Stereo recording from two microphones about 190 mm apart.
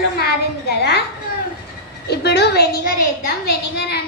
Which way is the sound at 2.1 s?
60° left (ahead or behind).